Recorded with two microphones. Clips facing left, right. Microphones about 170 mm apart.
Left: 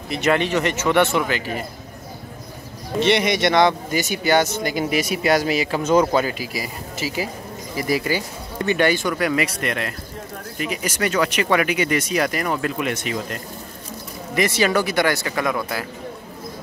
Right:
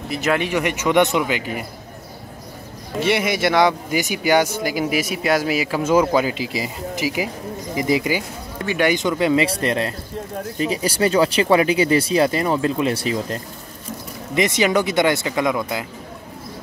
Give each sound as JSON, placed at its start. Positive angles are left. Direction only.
{"t": 0.1, "sound": "speech", "side_deg": -5}
{"t": 3.0, "sound": "speech", "side_deg": -5}
{"t": 8.5, "sound": "speech", "side_deg": -10}
{"t": 14.3, "sound": "speech", "side_deg": -20}